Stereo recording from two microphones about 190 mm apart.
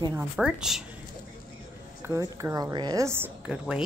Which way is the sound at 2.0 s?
15° right (ahead or behind).